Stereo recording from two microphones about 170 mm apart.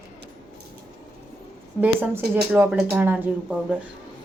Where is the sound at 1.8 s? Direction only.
10° right (ahead or behind).